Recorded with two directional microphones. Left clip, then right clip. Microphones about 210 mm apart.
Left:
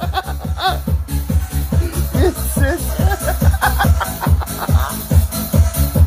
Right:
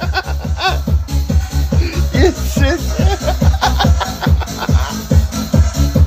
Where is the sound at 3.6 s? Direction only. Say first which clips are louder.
Right 1 dB; 15° right (ahead or behind).